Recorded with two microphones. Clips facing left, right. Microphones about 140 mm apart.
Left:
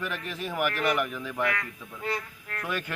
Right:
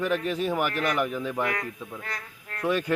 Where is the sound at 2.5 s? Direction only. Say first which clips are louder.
Right 7 dB; 30° right (ahead or behind).